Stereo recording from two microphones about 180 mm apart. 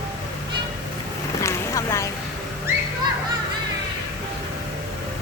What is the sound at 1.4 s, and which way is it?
Boat, 15° left (ahead or behind).